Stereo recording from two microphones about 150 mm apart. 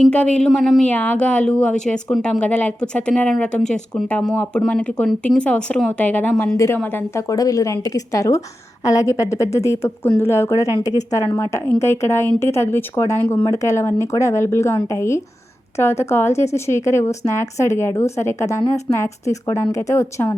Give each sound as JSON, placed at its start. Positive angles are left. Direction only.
{"t": 0.0, "sound": "speech", "side_deg": 5}